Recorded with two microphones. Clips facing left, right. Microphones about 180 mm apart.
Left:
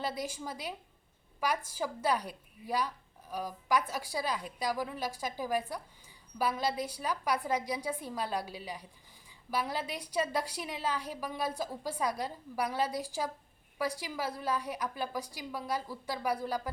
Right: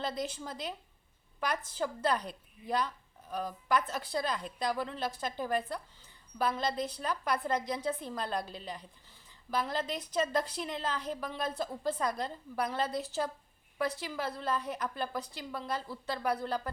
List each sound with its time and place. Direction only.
0.0 s a woman's voice: 10° left (ahead or behind)